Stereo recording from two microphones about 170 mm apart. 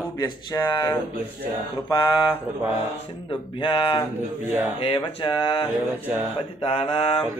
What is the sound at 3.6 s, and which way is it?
Speech, 30° left (ahead or behind).